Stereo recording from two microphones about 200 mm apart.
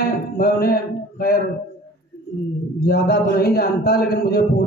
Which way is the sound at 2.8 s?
50° left (ahead or behind).